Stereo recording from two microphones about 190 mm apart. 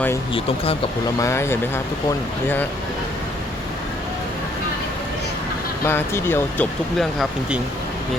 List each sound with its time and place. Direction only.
0.3 s speech: 30° left (ahead or behind)
1.2 s speech: 15° left (ahead or behind)
5.8 s speech: 15° left (ahead or behind)